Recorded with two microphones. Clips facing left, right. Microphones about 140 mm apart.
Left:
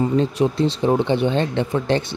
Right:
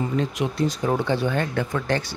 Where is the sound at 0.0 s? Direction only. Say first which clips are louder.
Left 6 dB; 30° left (ahead or behind).